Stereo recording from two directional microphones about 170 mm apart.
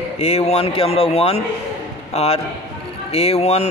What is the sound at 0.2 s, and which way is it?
Speech, 35° left (ahead or behind).